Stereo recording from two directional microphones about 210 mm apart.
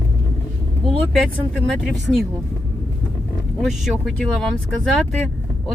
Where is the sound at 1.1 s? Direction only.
Centre (ahead or behind).